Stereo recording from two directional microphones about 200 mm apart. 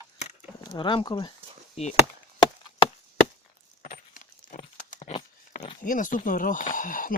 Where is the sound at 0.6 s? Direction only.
25° left (ahead or behind).